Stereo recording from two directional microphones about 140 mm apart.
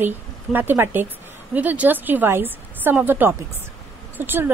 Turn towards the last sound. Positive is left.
turn(degrees=-15)  # may be behind; listen again after turning